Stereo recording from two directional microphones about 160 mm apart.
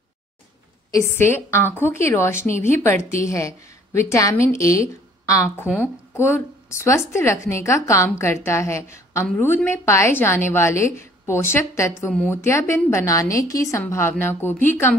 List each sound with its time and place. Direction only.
0.9 s a woman's voice: 15° left (ahead or behind)